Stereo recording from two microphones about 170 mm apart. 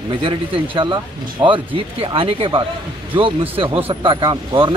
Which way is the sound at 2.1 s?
30° right (ahead or behind).